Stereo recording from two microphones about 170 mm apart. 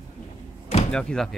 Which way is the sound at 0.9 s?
5° left (ahead or behind).